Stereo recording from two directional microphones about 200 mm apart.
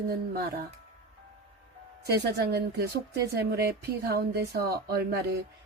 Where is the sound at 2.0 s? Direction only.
50° right (ahead or behind).